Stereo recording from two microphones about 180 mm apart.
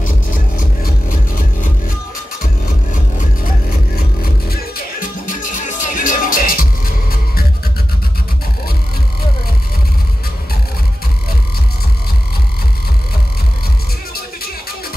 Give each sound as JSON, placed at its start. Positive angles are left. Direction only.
{"t": 4.2, "sound": "music", "side_deg": 55}